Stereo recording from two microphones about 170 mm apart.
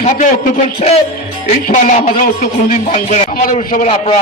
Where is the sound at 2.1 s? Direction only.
55° left (ahead or behind).